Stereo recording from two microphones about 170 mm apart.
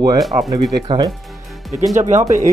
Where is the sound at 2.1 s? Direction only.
45° right (ahead or behind).